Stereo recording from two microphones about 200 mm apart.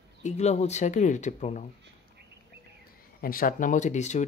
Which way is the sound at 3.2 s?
45° left (ahead or behind).